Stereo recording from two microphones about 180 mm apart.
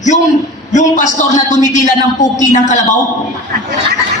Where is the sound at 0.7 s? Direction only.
40° left (ahead or behind).